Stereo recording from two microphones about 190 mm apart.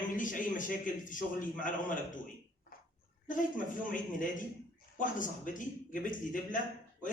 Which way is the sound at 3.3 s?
45° left (ahead or behind).